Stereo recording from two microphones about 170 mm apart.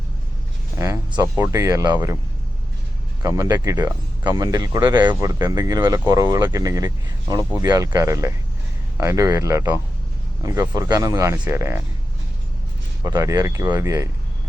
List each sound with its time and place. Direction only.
0.8 s speech: 20° right (ahead or behind)
3.2 s speech: 20° right (ahead or behind)
13.1 s speech: 20° right (ahead or behind)